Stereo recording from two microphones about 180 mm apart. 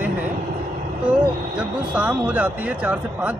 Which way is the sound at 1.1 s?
10° right (ahead or behind).